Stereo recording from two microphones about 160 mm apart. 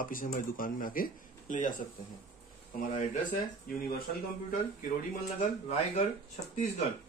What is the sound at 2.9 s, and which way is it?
Speech, 55° left (ahead or behind).